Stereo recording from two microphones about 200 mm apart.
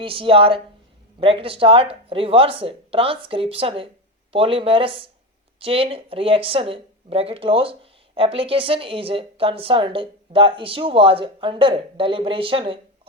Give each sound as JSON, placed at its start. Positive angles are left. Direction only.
{"t": 0.0, "sound": "speech", "side_deg": -25}